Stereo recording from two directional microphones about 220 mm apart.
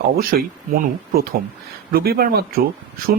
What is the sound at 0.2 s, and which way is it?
Speech, 40° right (ahead or behind).